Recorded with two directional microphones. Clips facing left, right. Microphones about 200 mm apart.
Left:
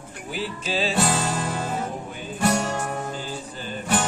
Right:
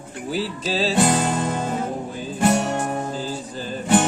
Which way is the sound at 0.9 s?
20° right (ahead or behind).